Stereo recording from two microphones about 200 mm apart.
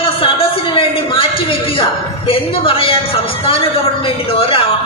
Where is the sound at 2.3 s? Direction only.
25° left (ahead or behind).